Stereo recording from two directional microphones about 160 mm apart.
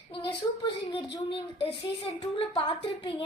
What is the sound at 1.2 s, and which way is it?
A woman's voice, 30° left (ahead or behind).